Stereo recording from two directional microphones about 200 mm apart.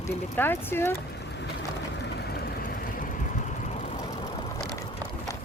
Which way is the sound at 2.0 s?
55° left (ahead or behind).